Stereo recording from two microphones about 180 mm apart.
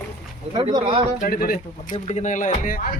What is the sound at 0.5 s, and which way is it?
Speech, 25° right (ahead or behind).